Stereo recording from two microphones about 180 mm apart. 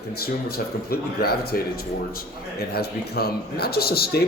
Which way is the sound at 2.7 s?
60° left (ahead or behind).